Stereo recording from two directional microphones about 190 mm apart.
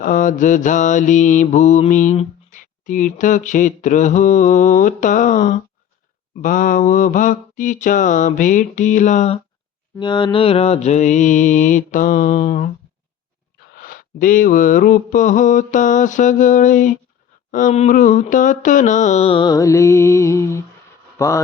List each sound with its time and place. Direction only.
0.0 s mantra: 45° left (ahead or behind)
10.0 s mantra: 25° left (ahead or behind)
13.7 s mantra: 50° left (ahead or behind); by 20.7 s 15° left (ahead or behind)
21.2 s speech: 15° left (ahead or behind)